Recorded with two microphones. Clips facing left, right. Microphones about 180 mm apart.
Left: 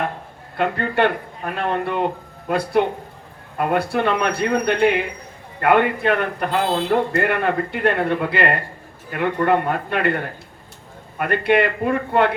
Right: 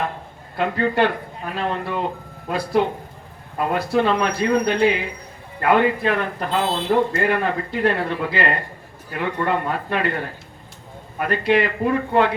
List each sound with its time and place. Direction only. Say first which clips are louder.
0.5 s speech: even; 60° left (ahead or behind)
11.2 s speech: left 1 dB; 60° left (ahead or behind)